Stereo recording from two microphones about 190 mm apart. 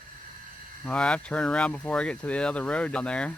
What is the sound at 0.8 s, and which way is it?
Speech, 5° left (ahead or behind).